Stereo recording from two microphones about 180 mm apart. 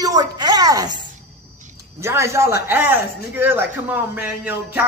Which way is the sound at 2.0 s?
15° right (ahead or behind).